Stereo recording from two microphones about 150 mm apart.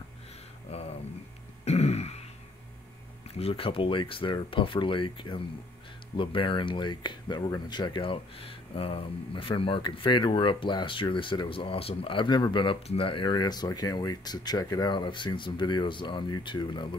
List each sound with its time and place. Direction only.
0.7 s a sound: 45° left (ahead or behind)
1.6 s throat clearing: 45° left (ahead or behind)
3.3 s speech: 40° left (ahead or behind)